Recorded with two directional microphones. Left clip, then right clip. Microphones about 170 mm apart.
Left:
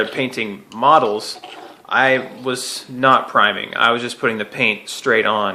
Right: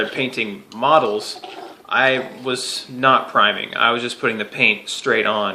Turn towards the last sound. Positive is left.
turn(degrees=20)  # may be behind; listen again after turning